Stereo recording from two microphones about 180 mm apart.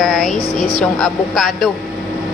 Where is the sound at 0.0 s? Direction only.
Centre (ahead or behind).